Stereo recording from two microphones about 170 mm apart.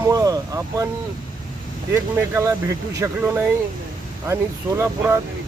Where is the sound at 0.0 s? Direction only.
20° right (ahead or behind).